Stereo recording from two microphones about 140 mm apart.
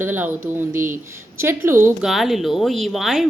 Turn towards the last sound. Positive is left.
turn(degrees=0)  # may be behind; listen again after turning